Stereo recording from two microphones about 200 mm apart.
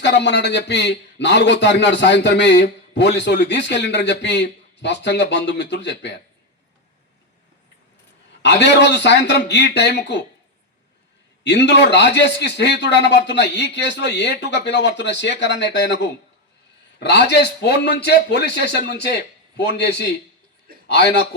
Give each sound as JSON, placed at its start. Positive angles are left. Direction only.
{"t": 0.0, "sound": "a man's voice", "side_deg": 60}
{"t": 8.4, "sound": "a man's voice", "side_deg": 60}
{"t": 11.4, "sound": "a man's voice", "side_deg": 60}